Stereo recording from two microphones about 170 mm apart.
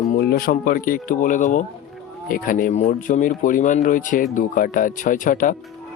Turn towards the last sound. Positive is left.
turn(degrees=50)  # may be behind; listen again after turning